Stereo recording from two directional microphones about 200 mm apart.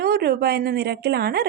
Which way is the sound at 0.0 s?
50° right (ahead or behind).